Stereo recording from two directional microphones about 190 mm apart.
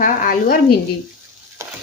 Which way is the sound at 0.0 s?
45° left (ahead or behind).